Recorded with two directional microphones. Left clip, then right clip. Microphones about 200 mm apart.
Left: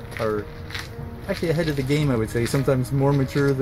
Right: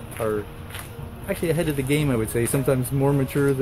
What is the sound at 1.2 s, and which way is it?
Speech, 5° right (ahead or behind).